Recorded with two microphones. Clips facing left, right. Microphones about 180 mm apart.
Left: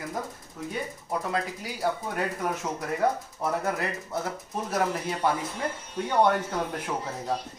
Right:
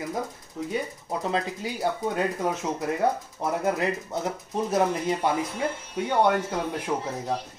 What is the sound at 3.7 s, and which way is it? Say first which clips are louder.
Speech: right 3 dB; 20° right (ahead or behind).